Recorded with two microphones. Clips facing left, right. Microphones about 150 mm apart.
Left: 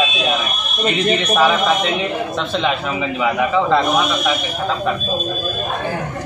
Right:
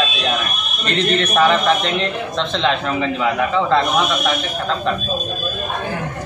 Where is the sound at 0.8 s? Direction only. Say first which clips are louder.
Left 1 dB; 10° left (ahead or behind).